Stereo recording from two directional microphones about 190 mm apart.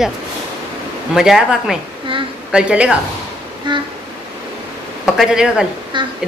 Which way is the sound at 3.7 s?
25° right (ahead or behind).